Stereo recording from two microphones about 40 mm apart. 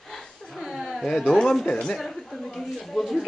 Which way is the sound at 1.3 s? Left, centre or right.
Centre.